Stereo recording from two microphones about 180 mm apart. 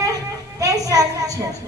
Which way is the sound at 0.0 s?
20° right (ahead or behind).